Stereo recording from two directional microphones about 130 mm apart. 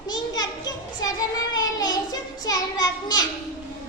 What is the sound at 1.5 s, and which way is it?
Child singing, 30° left (ahead or behind).